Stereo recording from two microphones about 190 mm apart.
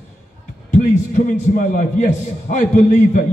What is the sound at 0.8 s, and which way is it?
A man's voice, 45° left (ahead or behind).